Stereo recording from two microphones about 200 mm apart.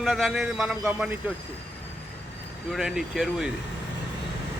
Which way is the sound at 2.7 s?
Centre (ahead or behind).